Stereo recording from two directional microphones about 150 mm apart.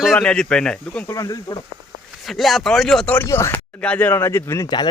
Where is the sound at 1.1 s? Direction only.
20° left (ahead or behind).